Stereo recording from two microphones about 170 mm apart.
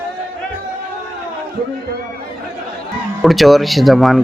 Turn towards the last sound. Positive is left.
turn(degrees=0)  # may be behind; listen again after turning